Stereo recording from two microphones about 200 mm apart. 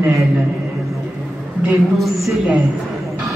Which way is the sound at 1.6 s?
5° right (ahead or behind).